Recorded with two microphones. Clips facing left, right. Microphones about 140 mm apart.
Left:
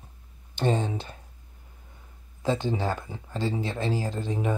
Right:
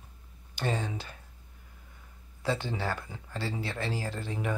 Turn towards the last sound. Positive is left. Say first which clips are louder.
# left 5 dB
turn(degrees=15)  # may be behind; listen again after turning